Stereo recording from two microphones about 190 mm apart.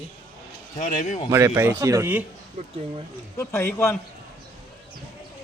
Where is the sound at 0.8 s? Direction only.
40° left (ahead or behind).